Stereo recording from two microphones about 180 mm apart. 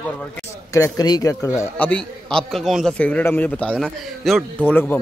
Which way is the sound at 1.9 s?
5° left (ahead or behind).